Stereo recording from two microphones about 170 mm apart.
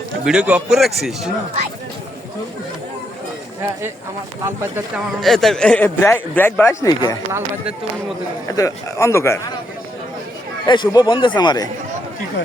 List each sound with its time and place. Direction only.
0.3 s a man's voice: 5° right (ahead or behind)
5.2 s speech: centre (ahead or behind); by 7.2 s 20° left (ahead or behind)
8.4 s speech: 20° left (ahead or behind)
10.7 s speech: 25° left (ahead or behind)